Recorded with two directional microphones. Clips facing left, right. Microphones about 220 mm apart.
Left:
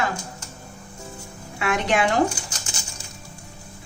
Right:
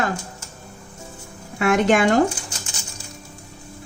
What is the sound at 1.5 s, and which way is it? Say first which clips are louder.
Speech: right 5 dB; 50° right (ahead or behind).